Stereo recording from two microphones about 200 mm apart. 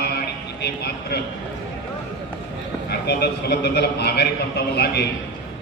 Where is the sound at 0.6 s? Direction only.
55° left (ahead or behind).